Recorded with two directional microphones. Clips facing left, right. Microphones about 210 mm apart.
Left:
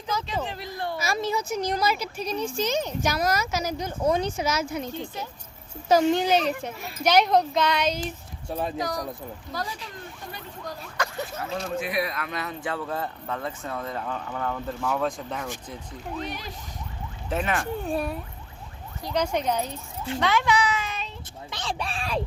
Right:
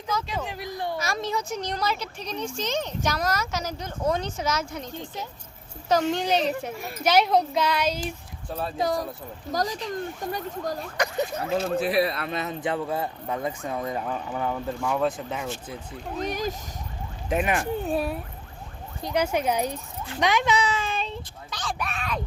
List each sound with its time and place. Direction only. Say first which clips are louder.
0.4 s speech: right 1 dB; 15° right (ahead or behind)
0.9 s speech: left 4 dB; 5° left (ahead or behind)
5.9 s a child's voice: left 3 dB; 5° left (ahead or behind)
8.4 s speech: left 2 dB; 10° left (ahead or behind)
8.8 s speech: right 4 dB; 25° right (ahead or behind)
9.5 s speech: right 8 dB; 40° right (ahead or behind)
10.9 s speech: right 3 dB; 15° right (ahead or behind)
11.6 s speech: right 4 dB; 35° right (ahead or behind); by 15.4 s 5° right (ahead or behind)
16.1 s speech: right 7 dB; 45° right (ahead or behind)
17.2 s speech: right 2 dB; 15° right (ahead or behind)
17.8 s a child's voice: right 1 dB; centre (ahead or behind); by 21.1 s 30° right (ahead or behind)
21.5 s speech: even; 25° left (ahead or behind)